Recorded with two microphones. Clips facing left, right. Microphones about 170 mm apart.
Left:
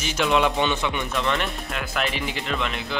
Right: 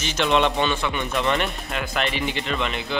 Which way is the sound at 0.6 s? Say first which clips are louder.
Even; 15° left (ahead or behind).